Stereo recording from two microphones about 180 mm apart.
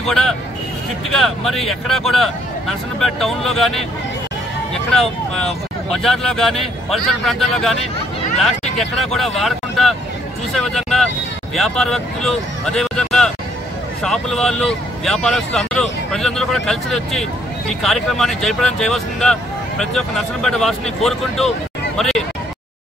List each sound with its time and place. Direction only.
0.0 s speech: 5° left (ahead or behind)
4.9 s speech: centre (ahead or behind)
8.7 s speech: centre (ahead or behind)